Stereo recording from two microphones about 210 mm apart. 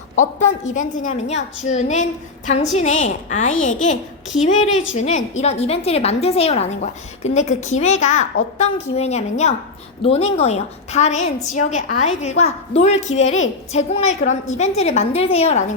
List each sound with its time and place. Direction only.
0.2 s a woman's voice: 35° left (ahead or behind)